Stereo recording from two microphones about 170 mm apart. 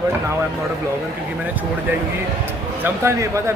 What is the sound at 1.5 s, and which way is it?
Speech, 10° right (ahead or behind).